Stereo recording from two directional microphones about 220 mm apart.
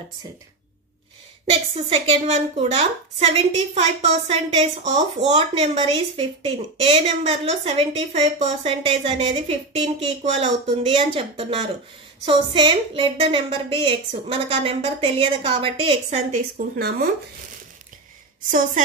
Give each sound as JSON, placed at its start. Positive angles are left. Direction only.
{"t": 1.5, "sound": "a woman's voice", "side_deg": -25}